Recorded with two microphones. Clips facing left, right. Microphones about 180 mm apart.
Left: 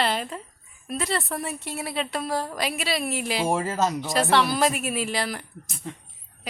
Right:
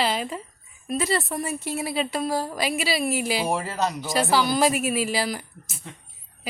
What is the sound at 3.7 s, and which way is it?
Speech, 45° left (ahead or behind).